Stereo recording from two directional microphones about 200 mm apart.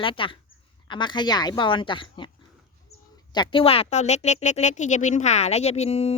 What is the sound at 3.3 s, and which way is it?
A woman's voice, 25° left (ahead or behind).